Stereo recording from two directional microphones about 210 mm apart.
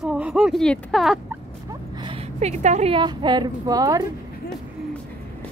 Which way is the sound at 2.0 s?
30° right (ahead or behind).